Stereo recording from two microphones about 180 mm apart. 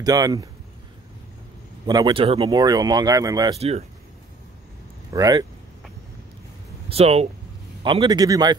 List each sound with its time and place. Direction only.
0.0 s speech: 20° right (ahead or behind)
1.9 s speech: 20° right (ahead or behind)
3.5 s speech: 35° right (ahead or behind)
5.1 s speech: 20° right (ahead or behind)
6.9 s speech: 35° right (ahead or behind)